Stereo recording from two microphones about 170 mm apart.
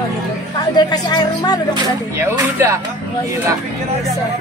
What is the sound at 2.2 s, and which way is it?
Speech, 15° right (ahead or behind).